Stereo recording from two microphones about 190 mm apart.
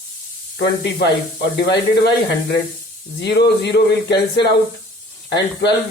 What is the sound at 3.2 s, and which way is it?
Speech, 60° left (ahead or behind).